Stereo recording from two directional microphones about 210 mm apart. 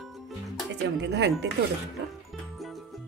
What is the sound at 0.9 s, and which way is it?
Speech, 60° right (ahead or behind).